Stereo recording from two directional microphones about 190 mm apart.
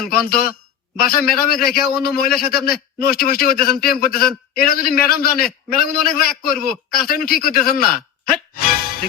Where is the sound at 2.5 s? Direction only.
50° left (ahead or behind).